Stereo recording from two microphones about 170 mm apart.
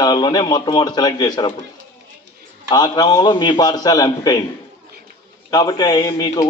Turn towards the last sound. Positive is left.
turn(degrees=25)  # may be behind; listen again after turning